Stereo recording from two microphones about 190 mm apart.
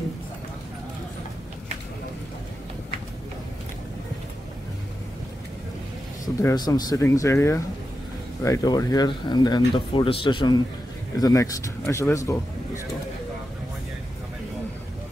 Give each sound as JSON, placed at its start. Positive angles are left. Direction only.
{"t": 6.2, "sound": "speech", "side_deg": 20}